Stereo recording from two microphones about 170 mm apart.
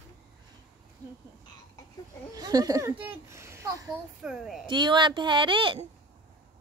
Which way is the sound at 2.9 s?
30° right (ahead or behind).